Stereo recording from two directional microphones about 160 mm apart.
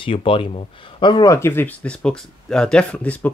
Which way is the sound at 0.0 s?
35° left (ahead or behind).